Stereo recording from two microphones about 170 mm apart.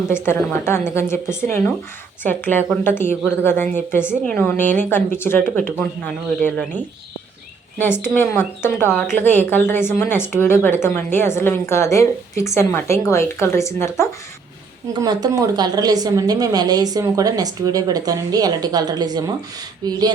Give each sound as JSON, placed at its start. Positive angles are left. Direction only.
{"t": 0.1, "sound": "a woman's voice", "side_deg": 15}
{"t": 7.8, "sound": "a woman's voice", "side_deg": 15}
{"t": 15.0, "sound": "a woman's voice", "side_deg": -25}